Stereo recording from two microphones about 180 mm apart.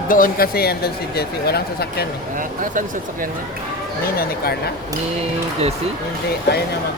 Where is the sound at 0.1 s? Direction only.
55° left (ahead or behind).